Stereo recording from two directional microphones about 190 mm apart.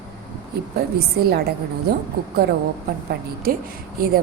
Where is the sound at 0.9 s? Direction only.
55° right (ahead or behind).